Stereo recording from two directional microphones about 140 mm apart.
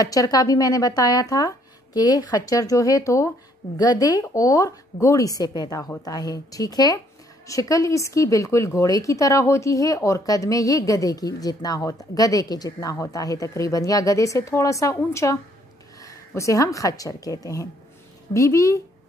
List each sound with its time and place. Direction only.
0.0 s a woman's voice: 25° left (ahead or behind)